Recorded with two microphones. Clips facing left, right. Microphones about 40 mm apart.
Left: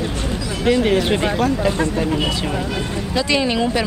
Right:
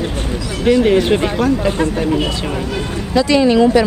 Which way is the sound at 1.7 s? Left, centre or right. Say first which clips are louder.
Right 2 dB; right.